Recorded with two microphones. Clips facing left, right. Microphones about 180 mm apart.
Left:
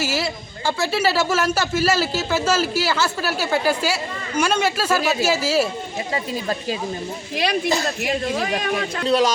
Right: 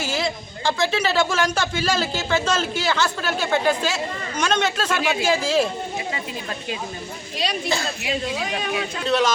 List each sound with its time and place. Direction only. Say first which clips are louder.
0.0 s a man's voice: left 1 dB; 5° left (ahead or behind)
7.7 s speech: left 3 dB; 45° left (ahead or behind)
9.0 s a man's voice: left 2 dB; 10° left (ahead or behind)